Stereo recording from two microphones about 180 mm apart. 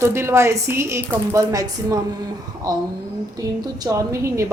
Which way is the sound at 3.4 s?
20° right (ahead or behind).